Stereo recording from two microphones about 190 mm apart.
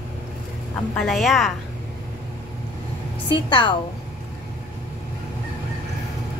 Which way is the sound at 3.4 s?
25° left (ahead or behind).